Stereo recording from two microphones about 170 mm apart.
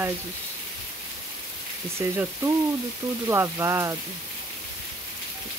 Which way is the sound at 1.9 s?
15° right (ahead or behind).